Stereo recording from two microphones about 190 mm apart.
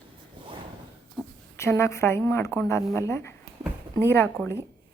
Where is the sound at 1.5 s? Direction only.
15° left (ahead or behind).